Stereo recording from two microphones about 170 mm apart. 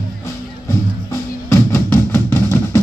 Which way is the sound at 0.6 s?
15° left (ahead or behind).